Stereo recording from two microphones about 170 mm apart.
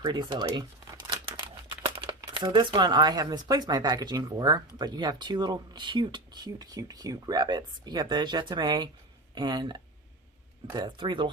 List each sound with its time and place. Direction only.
0.0 s speech: 25° right (ahead or behind)
1.9 s speech: 30° right (ahead or behind)